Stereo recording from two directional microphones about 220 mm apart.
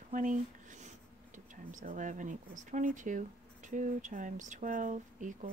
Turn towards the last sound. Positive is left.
turn(degrees=-35)  # may be behind; listen again after turning